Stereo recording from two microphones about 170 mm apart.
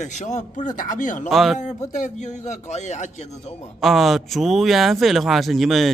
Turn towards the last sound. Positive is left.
turn(degrees=0)  # may be behind; listen again after turning